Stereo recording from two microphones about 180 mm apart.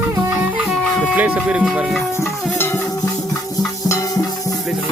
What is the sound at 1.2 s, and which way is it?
Speech, 5° right (ahead or behind).